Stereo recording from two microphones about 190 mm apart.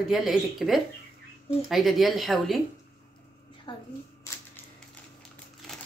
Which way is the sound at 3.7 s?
25° left (ahead or behind).